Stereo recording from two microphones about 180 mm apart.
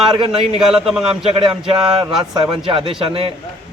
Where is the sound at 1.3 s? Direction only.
30° right (ahead or behind).